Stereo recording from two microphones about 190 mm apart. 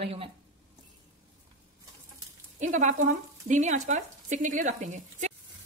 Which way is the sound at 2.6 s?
40° right (ahead or behind).